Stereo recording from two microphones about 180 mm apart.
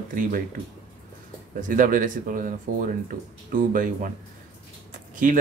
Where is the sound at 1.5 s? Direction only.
45° right (ahead or behind).